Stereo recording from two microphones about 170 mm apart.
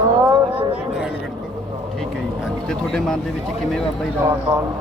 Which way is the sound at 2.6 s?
5° left (ahead or behind).